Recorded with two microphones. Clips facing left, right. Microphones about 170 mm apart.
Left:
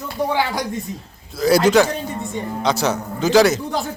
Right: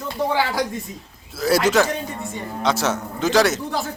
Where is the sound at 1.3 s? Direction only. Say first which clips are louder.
Left 4 dB; centre (ahead or behind).